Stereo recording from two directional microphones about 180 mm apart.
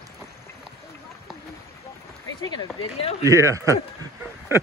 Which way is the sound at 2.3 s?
25° left (ahead or behind).